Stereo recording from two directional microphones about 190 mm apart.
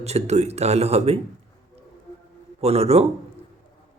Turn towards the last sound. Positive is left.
turn(degrees=-35)  # may be behind; listen again after turning